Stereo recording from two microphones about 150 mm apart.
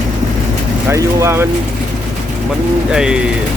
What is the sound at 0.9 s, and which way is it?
Speech, 20° right (ahead or behind).